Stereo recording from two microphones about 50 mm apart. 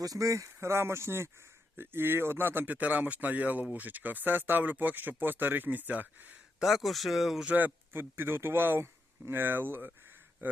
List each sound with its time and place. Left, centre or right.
0.2 s speech: right
1.8 s speech: right
2.6 s speech: right
6.6 s speech: centre
7.5 s speech: right
8.1 s speech: right